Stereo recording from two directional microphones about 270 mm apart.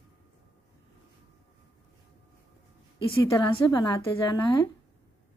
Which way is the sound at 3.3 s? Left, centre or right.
Centre.